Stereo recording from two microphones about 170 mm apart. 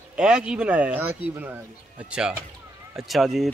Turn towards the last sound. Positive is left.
turn(degrees=0)  # may be behind; listen again after turning